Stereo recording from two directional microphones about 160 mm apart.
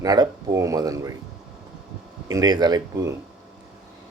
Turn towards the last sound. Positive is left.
turn(degrees=-20)  # may be behind; listen again after turning